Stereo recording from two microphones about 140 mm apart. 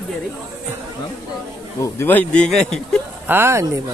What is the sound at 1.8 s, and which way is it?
Speech, 15° left (ahead or behind).